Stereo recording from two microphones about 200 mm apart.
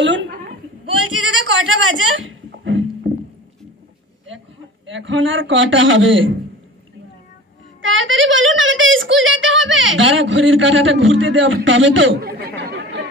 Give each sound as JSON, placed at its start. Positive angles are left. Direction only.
{"t": 0.0, "sound": "a sound", "side_deg": -65}
{"t": 1.2, "sound": "goat", "side_deg": -70}
{"t": 4.8, "sound": "a man's voice", "side_deg": -70}
{"t": 7.8, "sound": "speech", "side_deg": -70}
{"t": 12.2, "sound": "chatter", "side_deg": -50}